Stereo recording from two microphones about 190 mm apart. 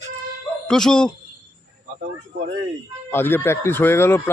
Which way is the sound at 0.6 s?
5° left (ahead or behind).